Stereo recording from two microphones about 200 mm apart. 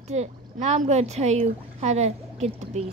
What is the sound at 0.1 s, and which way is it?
Speech, 35° right (ahead or behind).